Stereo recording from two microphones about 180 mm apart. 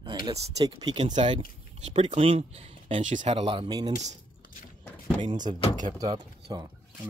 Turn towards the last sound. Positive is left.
turn(degrees=-20)  # may be behind; listen again after turning